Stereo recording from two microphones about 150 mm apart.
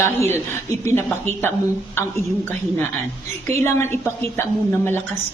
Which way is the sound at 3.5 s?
15° left (ahead or behind).